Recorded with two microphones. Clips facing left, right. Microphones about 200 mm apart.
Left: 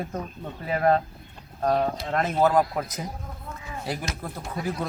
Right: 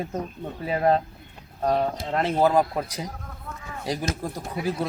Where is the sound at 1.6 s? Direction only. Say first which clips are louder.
Even; 5° right (ahead or behind).